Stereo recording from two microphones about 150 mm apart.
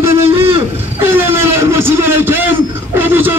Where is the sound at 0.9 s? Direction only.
15° right (ahead or behind).